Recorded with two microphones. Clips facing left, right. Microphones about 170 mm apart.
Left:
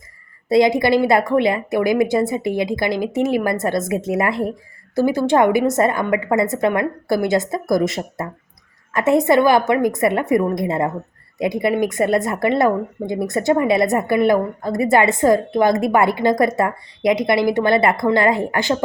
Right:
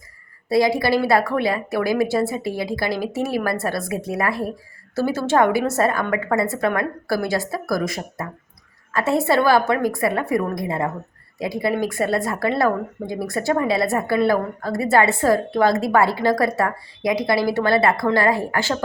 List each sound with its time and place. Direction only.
0.4 s speech: 20° left (ahead or behind)